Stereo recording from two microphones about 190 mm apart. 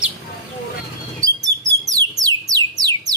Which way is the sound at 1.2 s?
20° right (ahead or behind).